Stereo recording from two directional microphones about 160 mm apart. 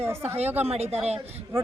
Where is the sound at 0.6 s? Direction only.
40° right (ahead or behind).